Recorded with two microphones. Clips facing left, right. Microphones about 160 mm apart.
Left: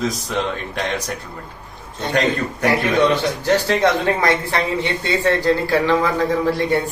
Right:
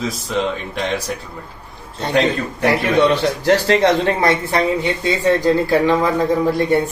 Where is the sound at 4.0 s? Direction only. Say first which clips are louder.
Right 2 dB; 25° right (ahead or behind).